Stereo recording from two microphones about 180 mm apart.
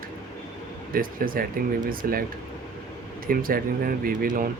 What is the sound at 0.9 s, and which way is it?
Speech, 50° right (ahead or behind).